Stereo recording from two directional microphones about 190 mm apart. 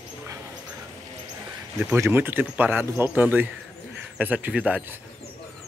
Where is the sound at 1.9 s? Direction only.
15° right (ahead or behind).